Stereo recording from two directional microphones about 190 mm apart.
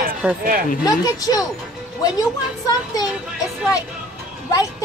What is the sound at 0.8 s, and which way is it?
Speech, 20° left (ahead or behind).